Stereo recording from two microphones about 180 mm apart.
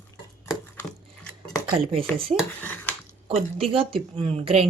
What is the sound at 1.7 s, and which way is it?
Speech, 30° right (ahead or behind).